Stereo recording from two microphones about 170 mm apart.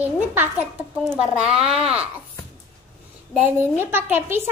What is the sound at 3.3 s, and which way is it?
A woman's voice, 10° right (ahead or behind).